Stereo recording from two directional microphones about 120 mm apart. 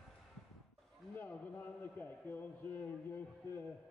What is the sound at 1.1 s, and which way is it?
A man's voice, 15° left (ahead or behind).